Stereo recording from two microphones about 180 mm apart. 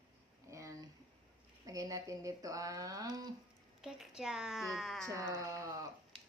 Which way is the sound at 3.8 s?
5° right (ahead or behind).